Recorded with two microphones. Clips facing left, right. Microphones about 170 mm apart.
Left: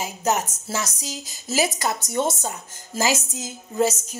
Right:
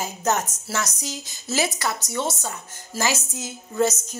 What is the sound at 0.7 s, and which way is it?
Speech, 35° left (ahead or behind).